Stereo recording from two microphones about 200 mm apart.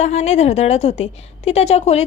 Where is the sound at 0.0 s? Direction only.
35° left (ahead or behind).